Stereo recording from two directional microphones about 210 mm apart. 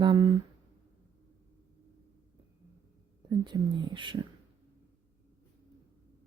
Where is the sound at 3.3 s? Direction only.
20° right (ahead or behind).